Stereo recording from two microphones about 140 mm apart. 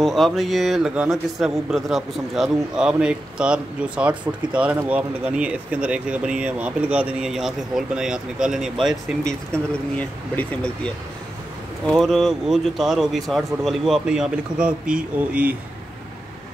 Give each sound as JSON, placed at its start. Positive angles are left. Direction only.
{"t": 0.0, "sound": "a man's voice", "side_deg": 0}
{"t": 9.5, "sound": "speech", "side_deg": 10}
{"t": 11.9, "sound": "a man's voice", "side_deg": 0}